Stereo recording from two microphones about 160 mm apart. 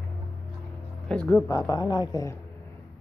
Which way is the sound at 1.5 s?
25° left (ahead or behind).